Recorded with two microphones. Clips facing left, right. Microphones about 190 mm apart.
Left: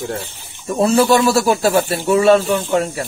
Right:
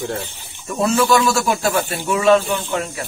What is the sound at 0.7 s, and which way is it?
Speech, 35° left (ahead or behind).